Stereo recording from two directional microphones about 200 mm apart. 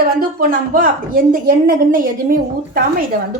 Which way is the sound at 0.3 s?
45° right (ahead or behind).